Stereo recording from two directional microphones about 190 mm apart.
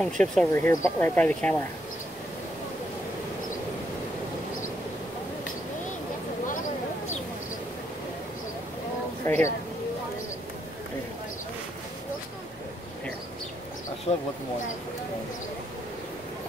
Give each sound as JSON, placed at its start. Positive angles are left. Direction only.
{"t": 0.0, "sound": "speech", "side_deg": 5}
{"t": 0.5, "sound": "speech", "side_deg": 15}
{"t": 9.2, "sound": "speech", "side_deg": 15}
{"t": 14.1, "sound": "speech", "side_deg": 35}